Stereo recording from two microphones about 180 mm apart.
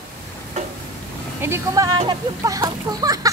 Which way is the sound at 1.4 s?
15° right (ahead or behind).